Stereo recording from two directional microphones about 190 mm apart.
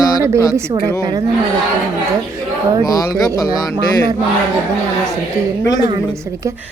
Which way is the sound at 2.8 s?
20° left (ahead or behind).